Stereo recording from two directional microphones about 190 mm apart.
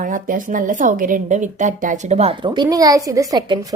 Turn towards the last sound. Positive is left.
turn(degrees=-20)  # may be behind; listen again after turning